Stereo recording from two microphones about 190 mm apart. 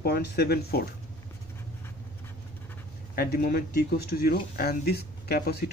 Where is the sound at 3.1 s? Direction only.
50° left (ahead or behind).